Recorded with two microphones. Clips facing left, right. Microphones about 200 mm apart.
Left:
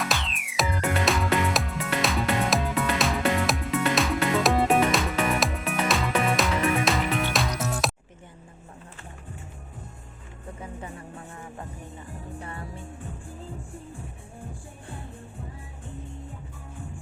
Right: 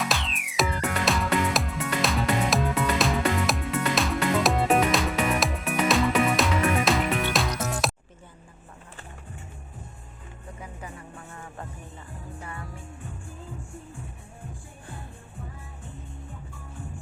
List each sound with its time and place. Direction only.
0.0 s music: centre (ahead or behind)
12.4 s music: 30° left (ahead or behind)